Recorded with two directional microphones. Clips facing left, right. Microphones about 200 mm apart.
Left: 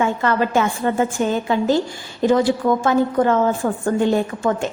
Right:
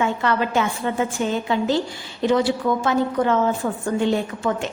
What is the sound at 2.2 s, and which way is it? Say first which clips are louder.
A woman's voice: left 3 dB; 50° left (ahead or behind).